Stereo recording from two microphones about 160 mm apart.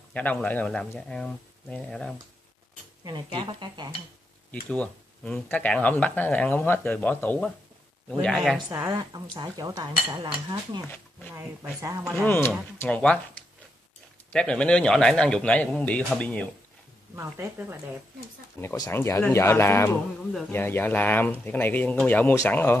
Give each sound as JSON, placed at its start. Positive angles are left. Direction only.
{"t": 0.1, "sound": "speech", "side_deg": 10}
{"t": 3.0, "sound": "speech", "side_deg": -30}
{"t": 4.5, "sound": "a man's voice", "side_deg": 10}
{"t": 8.7, "sound": "speech", "side_deg": -25}
{"t": 11.3, "sound": "speech", "side_deg": -15}
{"t": 12.0, "sound": "a man's voice", "side_deg": 0}
{"t": 12.3, "sound": "speech", "side_deg": 15}
{"t": 14.3, "sound": "a man's voice", "side_deg": 5}
{"t": 17.1, "sound": "speech", "side_deg": -15}
{"t": 18.6, "sound": "speech", "side_deg": 15}